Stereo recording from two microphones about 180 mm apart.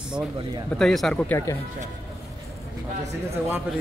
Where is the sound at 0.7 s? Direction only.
Centre (ahead or behind).